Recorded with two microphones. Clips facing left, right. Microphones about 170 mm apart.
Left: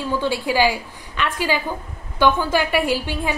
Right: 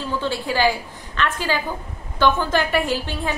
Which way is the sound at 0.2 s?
10° left (ahead or behind).